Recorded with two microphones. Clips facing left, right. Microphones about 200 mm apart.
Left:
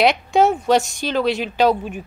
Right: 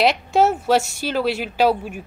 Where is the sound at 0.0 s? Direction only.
5° right (ahead or behind).